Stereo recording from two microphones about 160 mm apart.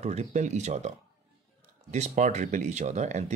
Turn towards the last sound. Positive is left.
turn(degrees=-45)  # may be behind; listen again after turning